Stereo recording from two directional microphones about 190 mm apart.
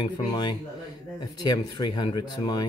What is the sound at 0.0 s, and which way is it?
Speech, 25° left (ahead or behind).